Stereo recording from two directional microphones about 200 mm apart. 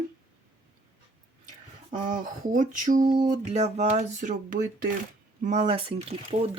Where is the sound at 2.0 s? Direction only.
40° right (ahead or behind).